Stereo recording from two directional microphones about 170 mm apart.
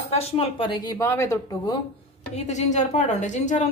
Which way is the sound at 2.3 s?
40° left (ahead or behind).